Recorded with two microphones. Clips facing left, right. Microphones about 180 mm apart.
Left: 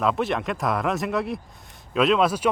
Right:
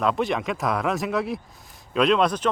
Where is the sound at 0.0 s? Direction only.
Centre (ahead or behind).